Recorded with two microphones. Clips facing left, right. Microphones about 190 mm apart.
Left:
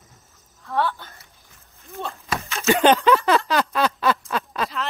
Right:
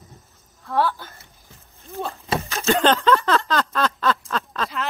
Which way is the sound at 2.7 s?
10° left (ahead or behind).